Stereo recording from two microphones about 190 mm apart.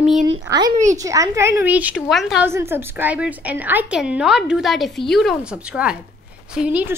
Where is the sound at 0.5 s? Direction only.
20° right (ahead or behind); by 2.4 s centre (ahead or behind).